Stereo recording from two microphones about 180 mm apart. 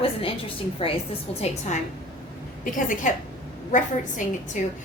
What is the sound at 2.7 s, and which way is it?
Speech, 45° left (ahead or behind).